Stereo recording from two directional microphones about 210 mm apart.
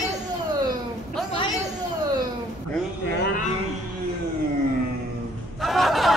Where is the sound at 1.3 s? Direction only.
25° left (ahead or behind).